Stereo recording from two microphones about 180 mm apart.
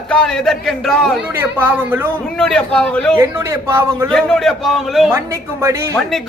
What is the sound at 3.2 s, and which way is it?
Speech, 15° right (ahead or behind).